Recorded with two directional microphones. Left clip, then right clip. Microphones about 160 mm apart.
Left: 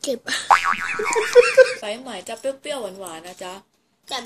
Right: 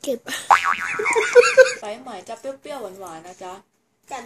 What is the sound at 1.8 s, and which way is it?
Speech, 35° left (ahead or behind).